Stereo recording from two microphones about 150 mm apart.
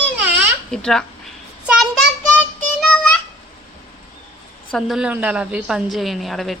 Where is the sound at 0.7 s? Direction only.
5° left (ahead or behind).